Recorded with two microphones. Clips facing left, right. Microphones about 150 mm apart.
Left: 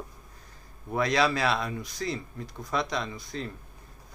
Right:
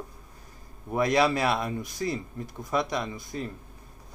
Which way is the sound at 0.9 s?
15° right (ahead or behind).